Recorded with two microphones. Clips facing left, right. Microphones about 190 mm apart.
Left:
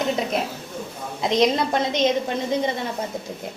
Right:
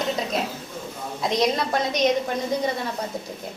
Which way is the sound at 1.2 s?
20° left (ahead or behind).